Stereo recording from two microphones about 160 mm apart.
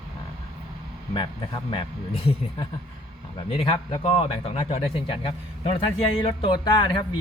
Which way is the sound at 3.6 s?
35° left (ahead or behind).